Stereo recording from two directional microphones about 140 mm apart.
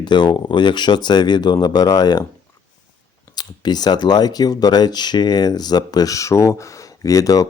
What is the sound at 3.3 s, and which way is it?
Speech, 30° left (ahead or behind).